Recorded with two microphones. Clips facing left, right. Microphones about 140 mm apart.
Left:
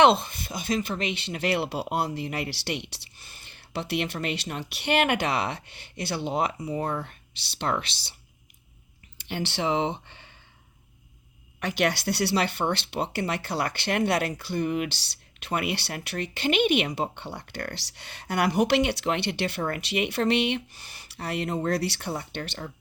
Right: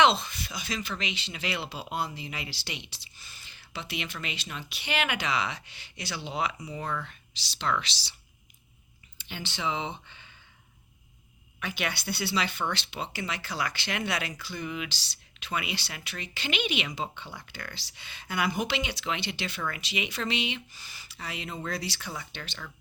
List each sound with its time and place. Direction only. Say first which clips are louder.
0.0 s speech: left 4 dB; 55° left (ahead or behind)
6.7 s speech: left 5 dB; 40° left (ahead or behind)
9.2 s speech: left 6 dB; 70° left (ahead or behind)
11.6 s speech: left 8 dB; 75° left (ahead or behind)